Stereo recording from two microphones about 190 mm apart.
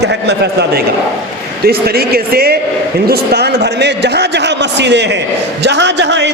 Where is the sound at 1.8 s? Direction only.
55° right (ahead or behind).